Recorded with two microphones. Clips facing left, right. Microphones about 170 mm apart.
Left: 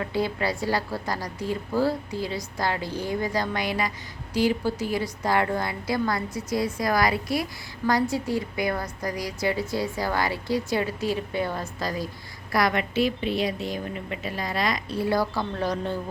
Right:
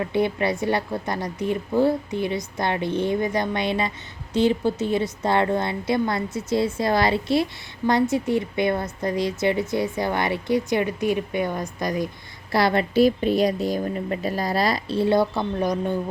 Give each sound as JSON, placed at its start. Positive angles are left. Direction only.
{"t": 0.0, "sound": "a woman's voice", "side_deg": -20}
{"t": 12.5, "sound": "speech", "side_deg": -30}